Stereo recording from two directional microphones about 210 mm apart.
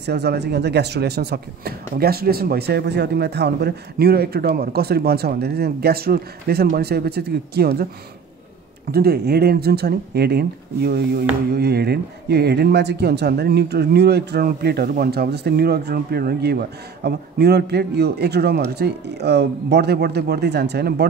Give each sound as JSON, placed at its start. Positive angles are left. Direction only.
{"t": 0.0, "sound": "speech", "side_deg": -50}
{"t": 8.9, "sound": "speech", "side_deg": -50}